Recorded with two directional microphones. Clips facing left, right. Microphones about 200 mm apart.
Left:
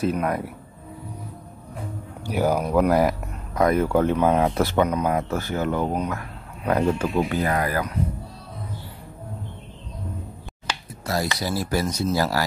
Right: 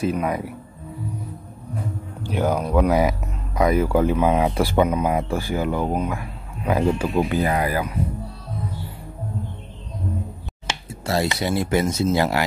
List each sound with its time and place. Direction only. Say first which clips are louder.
0.0 s speech: right 1 dB; centre (ahead or behind)
2.2 s speech: even; 5° left (ahead or behind); by 7.9 s 15° right (ahead or behind)
10.7 s speech: right 3 dB; 25° right (ahead or behind)